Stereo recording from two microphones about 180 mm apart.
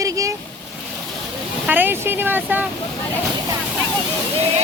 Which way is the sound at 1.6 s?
10° right (ahead or behind).